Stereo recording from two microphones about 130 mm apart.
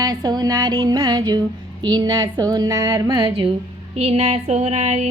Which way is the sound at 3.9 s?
55° right (ahead or behind).